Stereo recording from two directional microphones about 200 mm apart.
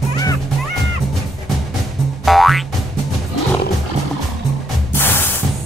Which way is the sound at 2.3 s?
Centre (ahead or behind).